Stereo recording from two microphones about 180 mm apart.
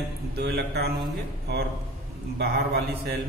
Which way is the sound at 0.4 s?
65° right (ahead or behind).